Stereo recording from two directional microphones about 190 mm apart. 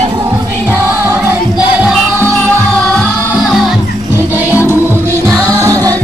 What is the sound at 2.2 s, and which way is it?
Music, 10° left (ahead or behind).